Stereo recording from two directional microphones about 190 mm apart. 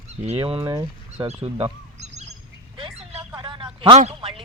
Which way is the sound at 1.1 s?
30° right (ahead or behind).